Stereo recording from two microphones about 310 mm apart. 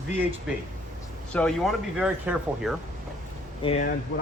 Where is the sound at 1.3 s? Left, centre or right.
Centre.